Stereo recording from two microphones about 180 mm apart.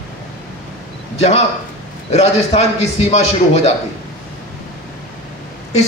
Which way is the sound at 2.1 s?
35° left (ahead or behind).